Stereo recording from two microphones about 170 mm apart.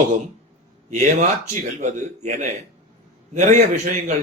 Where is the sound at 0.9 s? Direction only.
45° right (ahead or behind).